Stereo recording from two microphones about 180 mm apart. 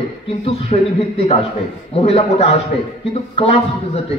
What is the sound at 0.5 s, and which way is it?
A man's voice, 35° left (ahead or behind).